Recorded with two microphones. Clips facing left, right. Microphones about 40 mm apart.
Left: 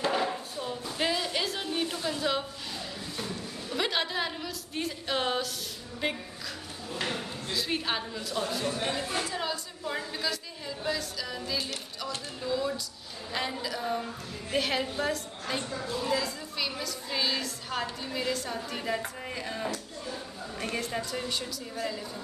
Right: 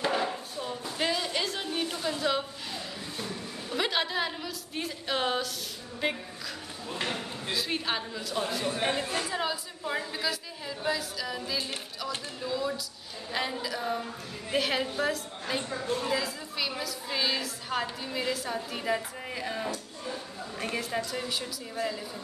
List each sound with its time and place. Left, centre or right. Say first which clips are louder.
0.1 s music: even; centre
5.9 s a woman's voice: right 1 dB; centre
6.9 s speech: even; right
7.5 s a woman's voice: even; centre
8.6 s speech: right 2 dB; right
9.2 s a woman's voice: right 1 dB; centre
19.7 s a sound: even; right
20.6 s a woman's voice: right 1 dB; centre